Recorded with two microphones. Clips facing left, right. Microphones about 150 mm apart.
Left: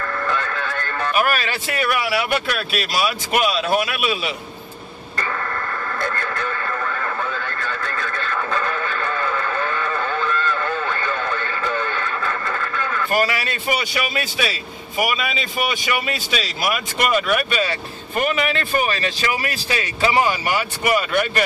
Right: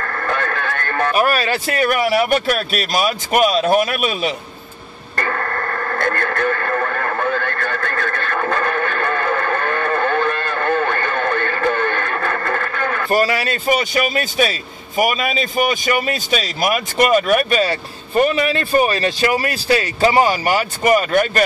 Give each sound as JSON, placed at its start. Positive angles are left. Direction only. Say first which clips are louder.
{"t": 0.0, "sound": "radio", "louder": "right 2 dB", "side_deg": -50}
{"t": 1.1, "sound": "speech", "louder": "right 3 dB", "side_deg": -40}
{"t": 5.1, "sound": "radio", "louder": "right 4 dB", "side_deg": -55}
{"t": 13.1, "sound": "a man's voice", "louder": "right 4 dB", "side_deg": -40}